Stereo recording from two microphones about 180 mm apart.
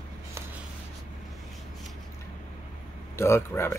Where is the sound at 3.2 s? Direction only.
15° left (ahead or behind).